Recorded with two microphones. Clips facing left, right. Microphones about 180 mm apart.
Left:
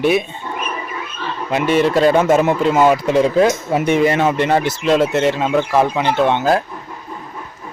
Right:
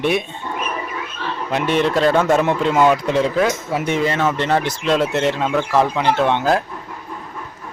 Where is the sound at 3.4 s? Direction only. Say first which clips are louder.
Left 4 dB; 30° left (ahead or behind).